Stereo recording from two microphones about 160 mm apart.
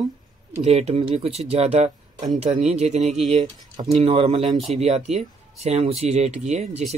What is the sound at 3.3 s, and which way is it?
Speech, 30° right (ahead or behind).